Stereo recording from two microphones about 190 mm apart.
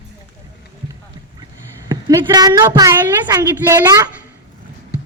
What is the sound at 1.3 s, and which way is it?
Speech, 20° right (ahead or behind).